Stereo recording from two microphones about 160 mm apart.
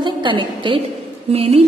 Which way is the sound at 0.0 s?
30° right (ahead or behind).